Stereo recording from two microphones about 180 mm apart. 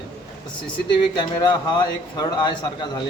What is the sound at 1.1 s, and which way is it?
A man's voice, 25° left (ahead or behind).